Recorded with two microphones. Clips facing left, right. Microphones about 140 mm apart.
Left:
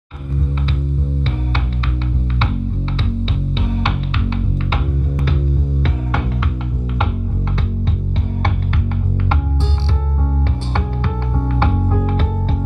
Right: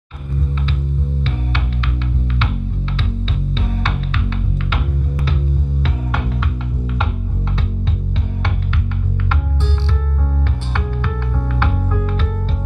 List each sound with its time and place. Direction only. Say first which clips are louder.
3.6 s music: left 2 dB; 25° left (ahead or behind)
11.3 s music: left 5 dB; 30° left (ahead or behind)